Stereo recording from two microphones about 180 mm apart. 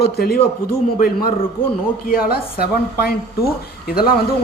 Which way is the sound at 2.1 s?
55° left (ahead or behind).